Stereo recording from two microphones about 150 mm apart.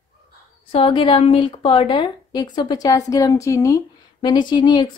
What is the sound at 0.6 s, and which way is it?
A woman's voice, 40° left (ahead or behind).